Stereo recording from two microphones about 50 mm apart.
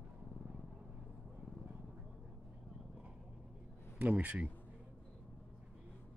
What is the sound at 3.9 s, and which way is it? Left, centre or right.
Speech, right.